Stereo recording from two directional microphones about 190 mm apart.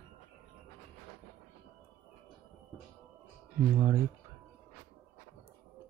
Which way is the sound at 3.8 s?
15° right (ahead or behind).